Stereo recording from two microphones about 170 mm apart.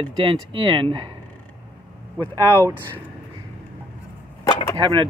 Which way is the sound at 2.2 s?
15° right (ahead or behind).